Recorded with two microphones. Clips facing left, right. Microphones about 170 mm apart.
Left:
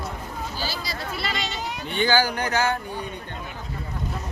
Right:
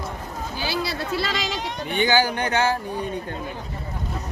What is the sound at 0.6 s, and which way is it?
Speech, 60° right (ahead or behind).